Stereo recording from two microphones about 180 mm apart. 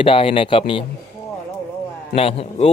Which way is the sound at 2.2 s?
30° left (ahead or behind).